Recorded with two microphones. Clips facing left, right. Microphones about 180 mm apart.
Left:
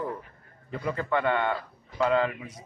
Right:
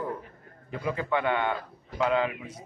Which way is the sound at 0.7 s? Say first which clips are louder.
Even; 10° right (ahead or behind).